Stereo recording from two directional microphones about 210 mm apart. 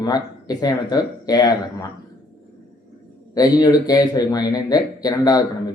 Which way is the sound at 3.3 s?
15° left (ahead or behind).